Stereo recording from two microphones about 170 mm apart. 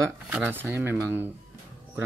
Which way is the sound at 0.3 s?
10° right (ahead or behind).